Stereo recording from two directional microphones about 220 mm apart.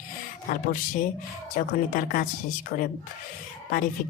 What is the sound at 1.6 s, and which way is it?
Speech, 40° left (ahead or behind).